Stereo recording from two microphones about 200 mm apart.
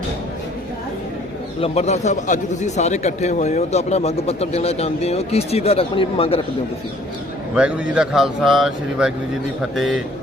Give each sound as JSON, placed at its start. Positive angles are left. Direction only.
{"t": 1.6, "sound": "speech", "side_deg": 30}
{"t": 7.5, "sound": "speech", "side_deg": -5}